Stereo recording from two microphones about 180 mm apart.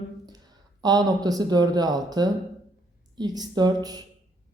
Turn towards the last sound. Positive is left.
turn(degrees=-20)  # may be behind; listen again after turning